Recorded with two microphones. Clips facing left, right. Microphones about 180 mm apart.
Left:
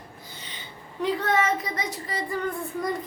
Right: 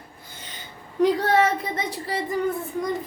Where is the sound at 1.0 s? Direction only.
40° right (ahead or behind).